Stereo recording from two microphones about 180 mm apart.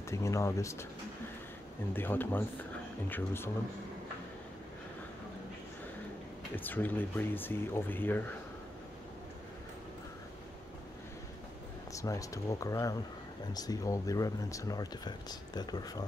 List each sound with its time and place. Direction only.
0.1 s speech: 15° left (ahead or behind)
2.0 s speech: 10° left (ahead or behind)
6.5 s speech: 10° left (ahead or behind)
11.9 s speech: 20° left (ahead or behind)